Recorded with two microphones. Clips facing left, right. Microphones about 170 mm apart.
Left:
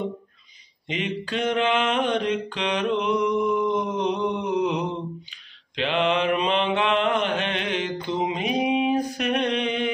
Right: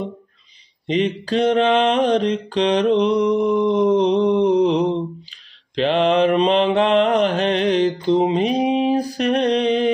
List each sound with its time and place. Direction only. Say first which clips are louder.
0.8 s mantra: right 9 dB; 35° right (ahead or behind)